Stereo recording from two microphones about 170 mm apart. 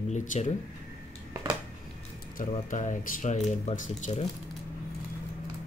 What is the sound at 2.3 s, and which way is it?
Speech, 50° left (ahead or behind).